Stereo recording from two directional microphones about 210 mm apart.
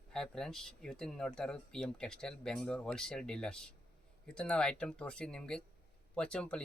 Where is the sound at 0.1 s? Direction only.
5° left (ahead or behind).